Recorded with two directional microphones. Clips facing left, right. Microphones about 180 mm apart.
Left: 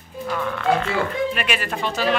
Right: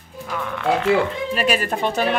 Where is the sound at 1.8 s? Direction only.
55° right (ahead or behind).